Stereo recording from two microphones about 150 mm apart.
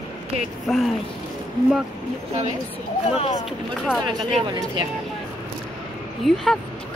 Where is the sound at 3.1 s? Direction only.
40° left (ahead or behind).